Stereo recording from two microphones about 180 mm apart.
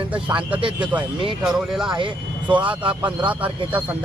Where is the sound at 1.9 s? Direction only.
25° right (ahead or behind).